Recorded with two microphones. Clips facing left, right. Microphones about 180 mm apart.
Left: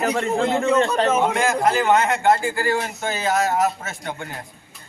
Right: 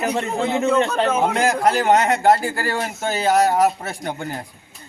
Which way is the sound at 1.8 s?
40° right (ahead or behind).